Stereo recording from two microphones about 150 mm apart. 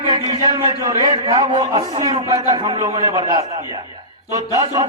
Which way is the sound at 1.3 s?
25° right (ahead or behind).